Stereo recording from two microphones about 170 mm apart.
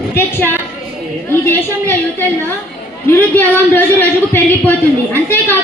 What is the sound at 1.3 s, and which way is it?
A man's voice, 15° left (ahead or behind).